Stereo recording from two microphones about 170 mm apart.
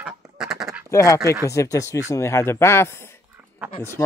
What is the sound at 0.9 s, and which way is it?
Speech, 20° left (ahead or behind).